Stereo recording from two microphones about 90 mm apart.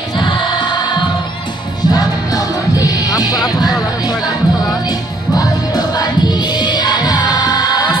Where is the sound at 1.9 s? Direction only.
45° left (ahead or behind).